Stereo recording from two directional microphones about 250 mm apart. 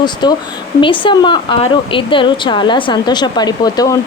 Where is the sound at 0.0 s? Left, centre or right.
Centre.